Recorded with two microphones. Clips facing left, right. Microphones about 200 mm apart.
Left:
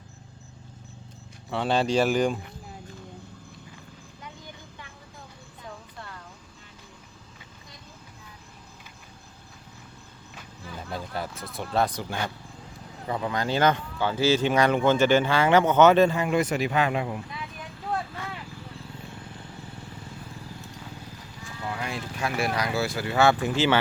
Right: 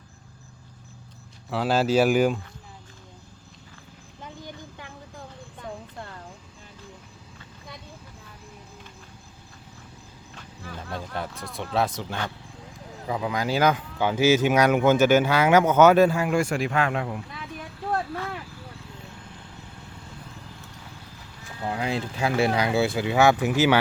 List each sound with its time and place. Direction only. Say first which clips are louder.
1.5 s speech: right 2 dB; 5° right (ahead or behind)
10.3 s a sound: right 1 dB; 5° left (ahead or behind)
13.1 s speech: right 1 dB; 5° right (ahead or behind)
21.6 s speech: right 5 dB; 30° right (ahead or behind); by 23.8 s 10° right (ahead or behind)